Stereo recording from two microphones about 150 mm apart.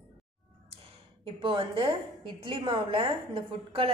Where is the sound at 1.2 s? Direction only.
35° right (ahead or behind).